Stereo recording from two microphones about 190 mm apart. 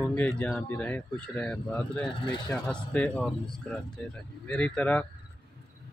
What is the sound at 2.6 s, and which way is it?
Speech, 5° left (ahead or behind).